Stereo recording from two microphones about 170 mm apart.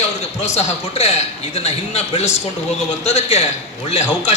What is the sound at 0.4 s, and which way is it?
A man's voice, 40° left (ahead or behind).